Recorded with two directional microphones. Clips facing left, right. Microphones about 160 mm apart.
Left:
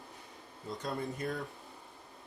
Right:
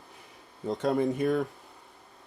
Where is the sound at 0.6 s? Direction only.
70° right (ahead or behind).